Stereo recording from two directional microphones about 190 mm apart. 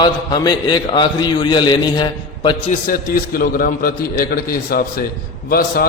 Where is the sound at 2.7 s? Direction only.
45° left (ahead or behind).